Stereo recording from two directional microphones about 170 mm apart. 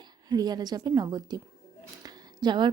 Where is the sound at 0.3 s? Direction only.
25° right (ahead or behind).